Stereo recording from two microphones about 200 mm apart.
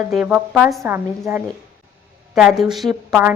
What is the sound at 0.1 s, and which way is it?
A woman's voice, 5° right (ahead or behind).